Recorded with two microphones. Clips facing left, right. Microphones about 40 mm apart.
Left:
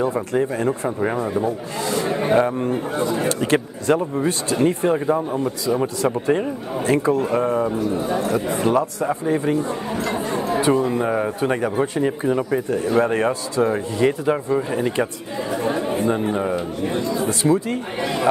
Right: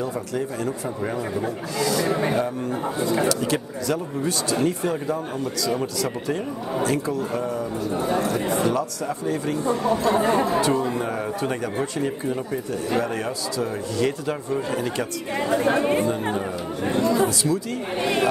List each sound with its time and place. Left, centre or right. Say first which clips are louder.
0.0 s speech: left 6 dB; left
8.6 s speech: left 5 dB; left
10.1 s speech: right 3 dB; right
10.6 s speech: left 4 dB; left
12.4 s speech: left 6 dB; left
13.0 s speech: left 7 dB; left
15.5 s speech: right 2 dB; right
17.0 s speech: right 3 dB; right
17.3 s speech: left 5 dB; left